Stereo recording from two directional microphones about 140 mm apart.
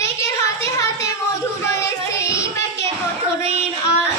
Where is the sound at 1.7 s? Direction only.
20° left (ahead or behind).